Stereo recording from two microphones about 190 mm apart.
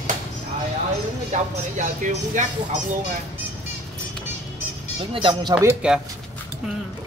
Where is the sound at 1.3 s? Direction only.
40° right (ahead or behind).